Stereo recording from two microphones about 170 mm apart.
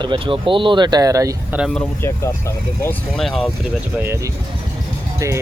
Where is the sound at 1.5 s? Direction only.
5° right (ahead or behind).